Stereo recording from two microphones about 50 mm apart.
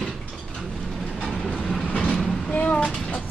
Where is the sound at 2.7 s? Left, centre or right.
Left.